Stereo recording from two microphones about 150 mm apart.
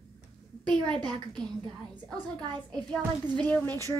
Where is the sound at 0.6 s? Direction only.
5° left (ahead or behind).